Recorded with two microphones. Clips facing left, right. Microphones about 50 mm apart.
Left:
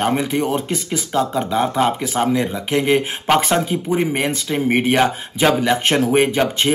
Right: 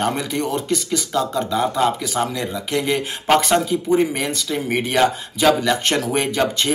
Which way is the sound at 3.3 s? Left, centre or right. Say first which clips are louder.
Right 1 dB; centre.